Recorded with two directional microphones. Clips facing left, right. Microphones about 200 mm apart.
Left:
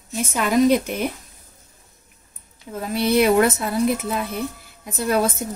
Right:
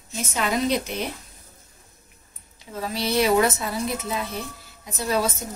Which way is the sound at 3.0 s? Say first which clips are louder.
Left 4 dB; 55° left (ahead or behind).